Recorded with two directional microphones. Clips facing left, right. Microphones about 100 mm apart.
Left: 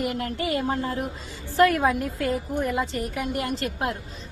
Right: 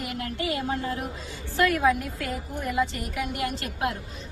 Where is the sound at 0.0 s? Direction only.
30° left (ahead or behind).